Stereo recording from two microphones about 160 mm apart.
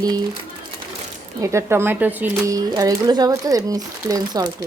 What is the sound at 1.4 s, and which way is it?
Speech, 20° right (ahead or behind).